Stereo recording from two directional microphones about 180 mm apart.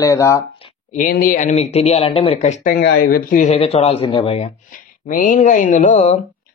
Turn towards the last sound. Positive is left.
turn(degrees=40)  # may be behind; listen again after turning